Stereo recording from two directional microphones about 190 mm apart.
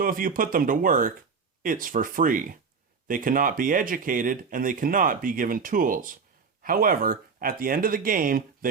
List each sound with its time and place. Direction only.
0.0 s speech: 45° right (ahead or behind)